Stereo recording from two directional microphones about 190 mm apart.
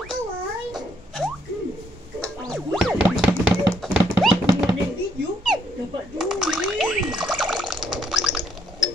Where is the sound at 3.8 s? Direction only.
Centre (ahead or behind).